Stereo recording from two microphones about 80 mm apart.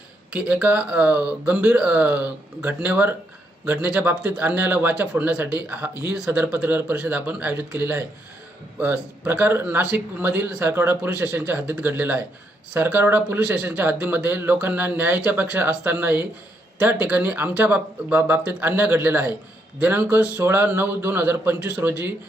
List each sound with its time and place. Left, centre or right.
0.3 s speech: centre
9.8 s speech: centre; by 22.0 s right